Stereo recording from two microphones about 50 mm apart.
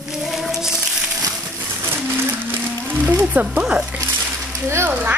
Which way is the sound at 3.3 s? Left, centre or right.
Right.